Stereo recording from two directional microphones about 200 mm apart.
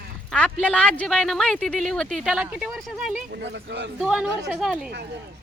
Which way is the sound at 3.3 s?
60° right (ahead or behind).